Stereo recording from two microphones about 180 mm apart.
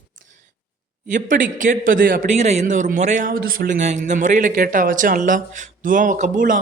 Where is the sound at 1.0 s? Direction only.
45° right (ahead or behind).